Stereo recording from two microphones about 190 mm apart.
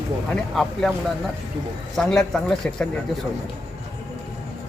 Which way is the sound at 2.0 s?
Centre (ahead or behind).